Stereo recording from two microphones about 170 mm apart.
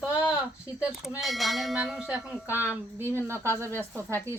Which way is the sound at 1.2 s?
Centre (ahead or behind).